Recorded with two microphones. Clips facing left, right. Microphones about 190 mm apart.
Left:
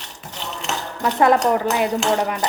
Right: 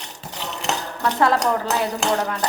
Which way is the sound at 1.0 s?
15° left (ahead or behind).